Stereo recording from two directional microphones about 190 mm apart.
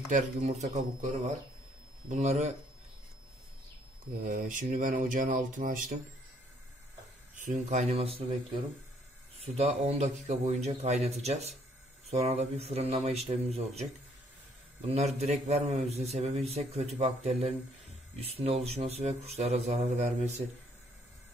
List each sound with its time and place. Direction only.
0.1 s a man's voice: 40° right (ahead or behind)
2.0 s a man's voice: 40° right (ahead or behind)
4.1 s speech: 50° right (ahead or behind)
7.3 s a man's voice: 40° right (ahead or behind)
9.4 s a man's voice: 35° right (ahead or behind)
14.9 s a man's voice: 35° right (ahead or behind)